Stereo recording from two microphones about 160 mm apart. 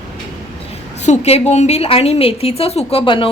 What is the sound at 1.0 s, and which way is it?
A woman's voice, 45° left (ahead or behind).